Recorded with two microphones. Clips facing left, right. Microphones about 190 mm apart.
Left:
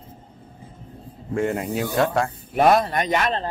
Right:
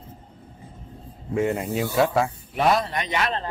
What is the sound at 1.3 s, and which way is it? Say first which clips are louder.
Speech: even; centre (ahead or behind).